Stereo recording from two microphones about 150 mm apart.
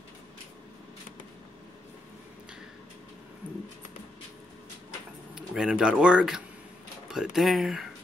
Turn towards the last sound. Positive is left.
turn(degrees=0)  # may be behind; listen again after turning